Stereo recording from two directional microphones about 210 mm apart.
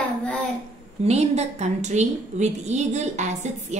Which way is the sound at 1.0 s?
30° right (ahead or behind).